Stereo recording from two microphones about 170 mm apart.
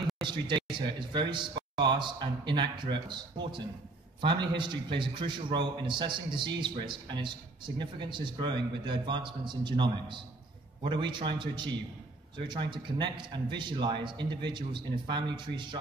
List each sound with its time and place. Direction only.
0.2 s a man's voice: 30° right (ahead or behind)